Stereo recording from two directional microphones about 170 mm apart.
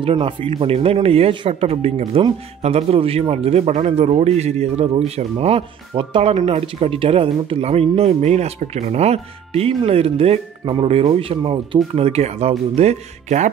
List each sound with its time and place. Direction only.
0.0 s speech: 30° right (ahead or behind)